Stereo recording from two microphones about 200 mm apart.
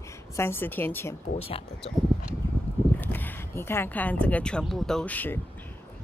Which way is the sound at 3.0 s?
10° left (ahead or behind).